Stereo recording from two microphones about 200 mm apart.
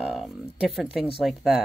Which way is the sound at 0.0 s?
5° right (ahead or behind).